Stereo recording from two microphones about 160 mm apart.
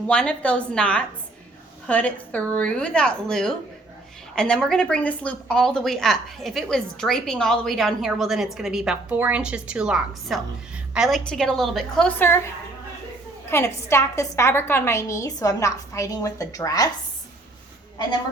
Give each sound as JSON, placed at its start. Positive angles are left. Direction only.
{"t": 0.1, "sound": "a woman's voice", "side_deg": 5}
{"t": 13.5, "sound": "a woman's voice", "side_deg": 15}